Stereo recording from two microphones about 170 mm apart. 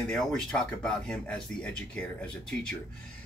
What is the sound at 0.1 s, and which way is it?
Speech, 5° left (ahead or behind).